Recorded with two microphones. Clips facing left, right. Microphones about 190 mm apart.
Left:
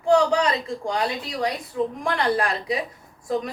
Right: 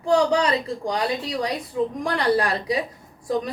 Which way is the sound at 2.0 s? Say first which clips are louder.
Right 2 dB; 35° right (ahead or behind).